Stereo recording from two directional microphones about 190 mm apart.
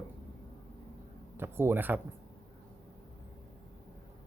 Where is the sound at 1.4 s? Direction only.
10° right (ahead or behind).